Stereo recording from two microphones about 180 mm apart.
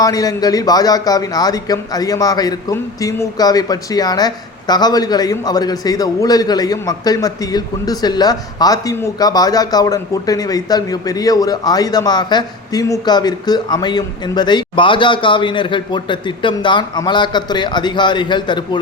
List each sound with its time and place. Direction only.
0.0 s a man's voice: 20° left (ahead or behind)